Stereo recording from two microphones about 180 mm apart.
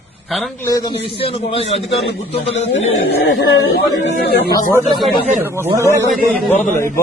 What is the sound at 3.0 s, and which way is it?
Speech, 90° left.